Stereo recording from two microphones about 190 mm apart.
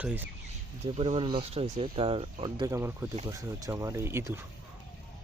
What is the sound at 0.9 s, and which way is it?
Speech, 30° right (ahead or behind).